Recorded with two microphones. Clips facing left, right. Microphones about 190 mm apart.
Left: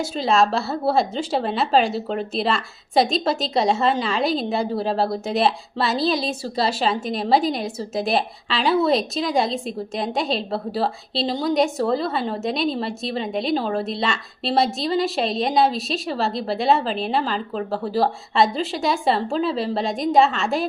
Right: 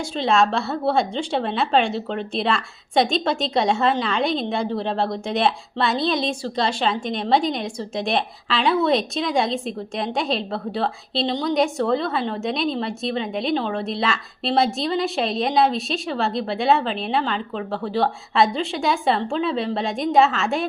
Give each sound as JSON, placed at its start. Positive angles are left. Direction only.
{"t": 0.0, "sound": "a woman's voice", "side_deg": 5}